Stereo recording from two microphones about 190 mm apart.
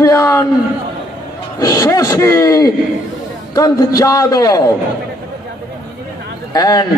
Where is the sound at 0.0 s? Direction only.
15° left (ahead or behind).